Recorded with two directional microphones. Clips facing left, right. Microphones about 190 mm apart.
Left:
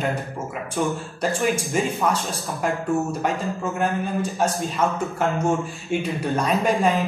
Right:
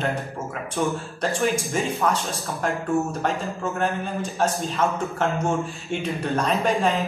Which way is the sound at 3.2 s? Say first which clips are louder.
Left 1 dB; 15° left (ahead or behind).